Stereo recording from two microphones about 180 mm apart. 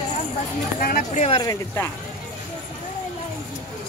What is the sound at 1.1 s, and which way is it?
Speech, 35° left (ahead or behind).